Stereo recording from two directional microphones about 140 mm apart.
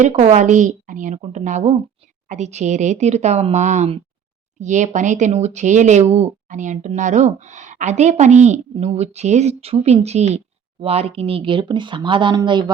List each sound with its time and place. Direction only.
0.0 s a woman's voice: 50° right (ahead or behind); by 12.7 s 30° right (ahead or behind)